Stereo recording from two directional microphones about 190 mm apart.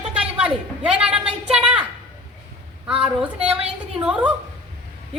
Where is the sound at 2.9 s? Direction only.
5° right (ahead or behind).